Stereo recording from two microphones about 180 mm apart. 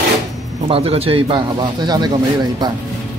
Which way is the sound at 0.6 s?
30° right (ahead or behind).